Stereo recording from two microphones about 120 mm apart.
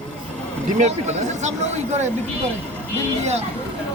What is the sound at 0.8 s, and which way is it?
Speech, 70° right (ahead or behind).